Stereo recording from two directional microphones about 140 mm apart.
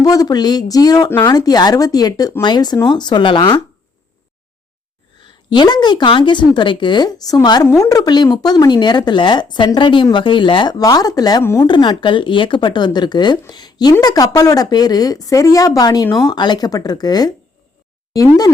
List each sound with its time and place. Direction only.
0.0 s a woman's voice: 25° left (ahead or behind)
5.2 s a woman's voice: 35° left (ahead or behind)